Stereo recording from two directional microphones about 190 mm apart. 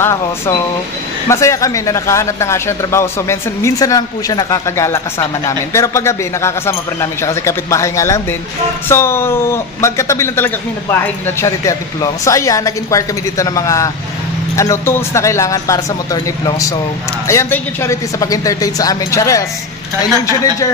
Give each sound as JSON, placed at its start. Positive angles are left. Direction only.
{"t": 0.0, "sound": "speech", "side_deg": 15}